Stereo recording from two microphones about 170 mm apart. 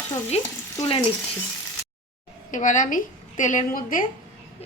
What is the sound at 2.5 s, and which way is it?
A woman's voice, 50° left (ahead or behind).